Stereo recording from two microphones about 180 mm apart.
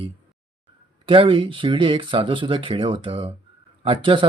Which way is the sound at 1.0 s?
30° right (ahead or behind).